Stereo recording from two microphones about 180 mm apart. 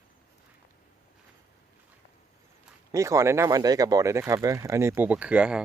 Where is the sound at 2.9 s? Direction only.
15° right (ahead or behind).